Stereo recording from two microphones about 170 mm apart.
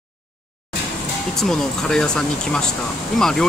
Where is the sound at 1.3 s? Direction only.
Centre (ahead or behind).